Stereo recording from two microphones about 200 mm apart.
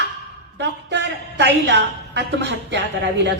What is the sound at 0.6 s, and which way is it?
A woman's voice, 60° right (ahead or behind).